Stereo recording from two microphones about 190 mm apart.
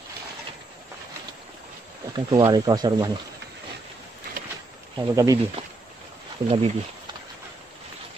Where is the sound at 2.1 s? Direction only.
20° right (ahead or behind).